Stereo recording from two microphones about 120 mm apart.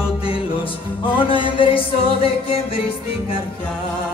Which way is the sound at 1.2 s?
45° left (ahead or behind).